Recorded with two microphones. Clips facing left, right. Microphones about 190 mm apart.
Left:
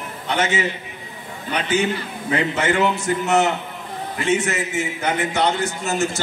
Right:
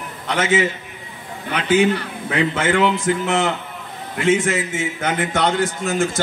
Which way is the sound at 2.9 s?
90° right.